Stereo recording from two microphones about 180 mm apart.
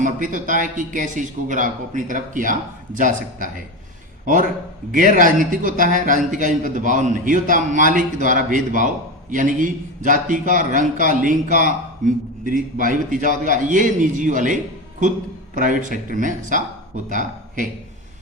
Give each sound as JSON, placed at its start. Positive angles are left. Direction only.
{"t": 0.0, "sound": "a man's voice", "side_deg": -45}
{"t": 4.9, "sound": "a man's voice", "side_deg": -45}